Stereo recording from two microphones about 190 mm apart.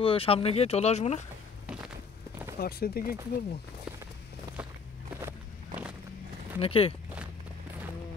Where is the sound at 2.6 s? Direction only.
55° left (ahead or behind).